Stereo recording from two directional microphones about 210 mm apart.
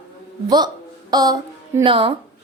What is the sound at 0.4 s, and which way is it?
Speech, 20° right (ahead or behind).